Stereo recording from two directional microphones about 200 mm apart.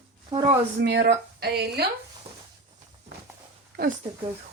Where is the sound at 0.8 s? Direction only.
55° right (ahead or behind).